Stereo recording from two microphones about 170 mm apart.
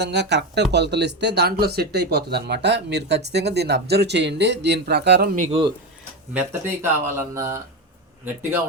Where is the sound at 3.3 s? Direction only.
80° right.